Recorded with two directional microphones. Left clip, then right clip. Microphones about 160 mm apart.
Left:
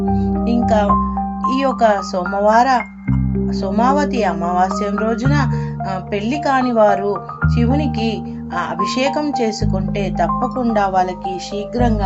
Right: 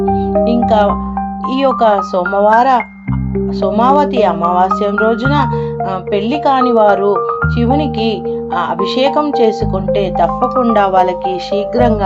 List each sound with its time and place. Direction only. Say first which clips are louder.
1.6 s speech: right 5 dB; 25° right (ahead or behind)
3.8 s speech: right 5 dB; 25° right (ahead or behind)
6.5 s speech: right 4 dB; 25° right (ahead or behind)
7.7 s speech: right 8 dB; 15° left (ahead or behind)
10.0 s speech: right 4 dB; 20° right (ahead or behind)